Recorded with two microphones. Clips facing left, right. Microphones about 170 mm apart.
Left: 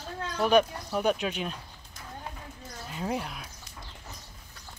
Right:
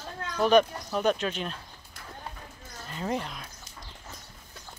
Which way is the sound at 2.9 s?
5° left (ahead or behind).